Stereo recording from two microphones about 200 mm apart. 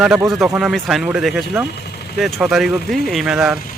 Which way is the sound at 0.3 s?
Centre (ahead or behind).